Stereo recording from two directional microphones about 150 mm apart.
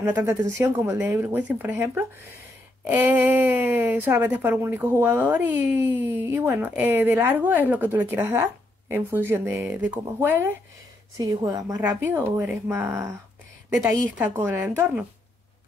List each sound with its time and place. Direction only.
0.0 s speech: 15° right (ahead or behind)
14.1 s speech: 15° right (ahead or behind)